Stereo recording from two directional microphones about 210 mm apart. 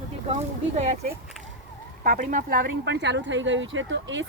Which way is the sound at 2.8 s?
55° right (ahead or behind).